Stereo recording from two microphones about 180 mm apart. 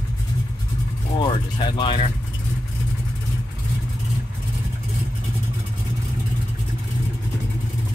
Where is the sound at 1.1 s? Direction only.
25° left (ahead or behind).